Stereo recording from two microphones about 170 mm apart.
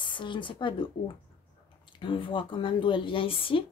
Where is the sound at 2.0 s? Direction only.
30° left (ahead or behind).